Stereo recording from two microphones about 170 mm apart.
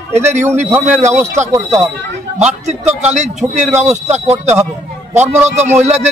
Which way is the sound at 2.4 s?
40° right (ahead or behind).